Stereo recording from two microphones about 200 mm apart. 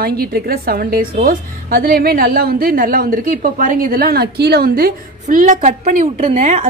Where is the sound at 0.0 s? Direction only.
50° right (ahead or behind).